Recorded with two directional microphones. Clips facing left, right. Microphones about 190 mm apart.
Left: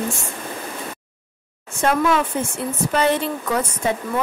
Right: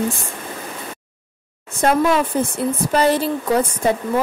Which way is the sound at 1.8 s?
45° right (ahead or behind).